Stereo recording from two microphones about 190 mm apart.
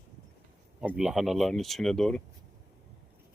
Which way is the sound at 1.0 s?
Centre (ahead or behind).